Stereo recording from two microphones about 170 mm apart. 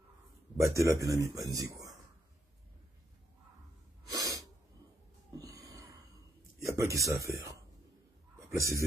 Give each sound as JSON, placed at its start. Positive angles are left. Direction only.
{"t": 0.6, "sound": "speech", "side_deg": -15}
{"t": 4.1, "sound": "sneeze", "side_deg": -20}
{"t": 5.4, "sound": "a sound", "side_deg": -20}
{"t": 7.2, "sound": "speech", "side_deg": -20}